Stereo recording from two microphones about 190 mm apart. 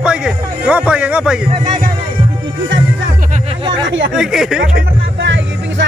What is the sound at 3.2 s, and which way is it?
Music, 40° right (ahead or behind).